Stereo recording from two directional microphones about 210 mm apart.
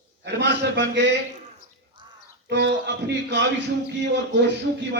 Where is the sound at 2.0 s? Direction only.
20° right (ahead or behind).